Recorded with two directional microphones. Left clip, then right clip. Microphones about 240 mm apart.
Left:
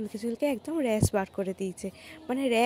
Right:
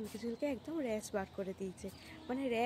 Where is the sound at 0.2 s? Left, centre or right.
Left.